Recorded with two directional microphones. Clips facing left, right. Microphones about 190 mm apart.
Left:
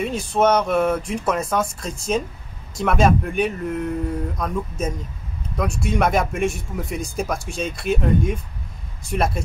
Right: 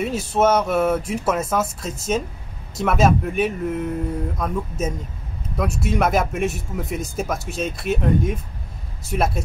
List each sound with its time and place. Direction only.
0.0 s speech: 5° right (ahead or behind)